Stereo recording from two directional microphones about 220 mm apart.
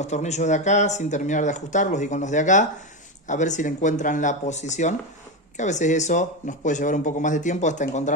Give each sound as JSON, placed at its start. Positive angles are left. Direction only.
{"t": 0.0, "sound": "speech", "side_deg": 30}